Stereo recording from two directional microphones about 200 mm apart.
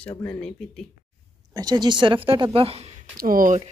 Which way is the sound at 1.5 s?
20° right (ahead or behind).